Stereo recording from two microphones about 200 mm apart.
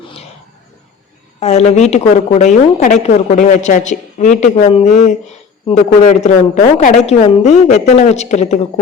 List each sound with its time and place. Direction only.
1.4 s a woman's voice: 35° left (ahead or behind)